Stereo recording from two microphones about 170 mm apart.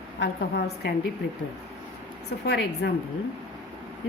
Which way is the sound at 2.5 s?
75° left (ahead or behind).